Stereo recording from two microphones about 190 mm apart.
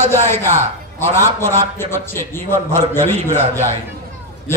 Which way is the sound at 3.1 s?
35° right (ahead or behind).